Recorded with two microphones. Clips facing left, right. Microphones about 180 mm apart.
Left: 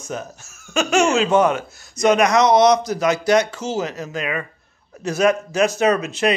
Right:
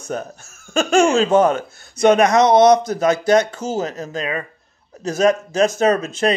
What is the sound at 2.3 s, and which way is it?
Speech, 55° right (ahead or behind).